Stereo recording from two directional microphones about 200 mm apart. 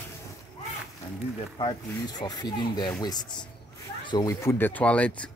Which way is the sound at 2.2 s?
20° left (ahead or behind).